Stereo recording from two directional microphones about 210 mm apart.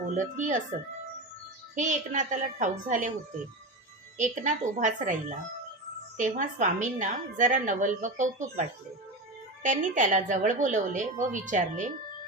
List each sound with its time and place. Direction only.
0.2 s a woman's voice: 35° right (ahead or behind)
1.7 s a woman's voice: 35° right (ahead or behind)
4.2 s a woman's voice: 35° right (ahead or behind)
9.6 s a woman's voice: 40° right (ahead or behind)